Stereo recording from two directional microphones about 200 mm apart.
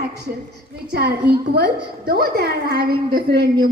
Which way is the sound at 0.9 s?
55° right (ahead or behind).